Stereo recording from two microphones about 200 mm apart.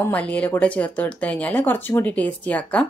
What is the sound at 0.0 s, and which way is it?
Speech, 5° left (ahead or behind).